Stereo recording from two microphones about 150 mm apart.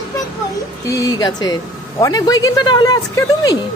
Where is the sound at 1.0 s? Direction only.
25° left (ahead or behind).